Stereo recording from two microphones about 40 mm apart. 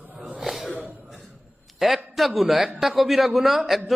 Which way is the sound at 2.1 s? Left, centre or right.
Centre.